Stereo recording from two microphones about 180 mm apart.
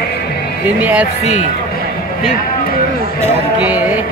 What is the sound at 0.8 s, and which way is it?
Speech, 10° right (ahead or behind).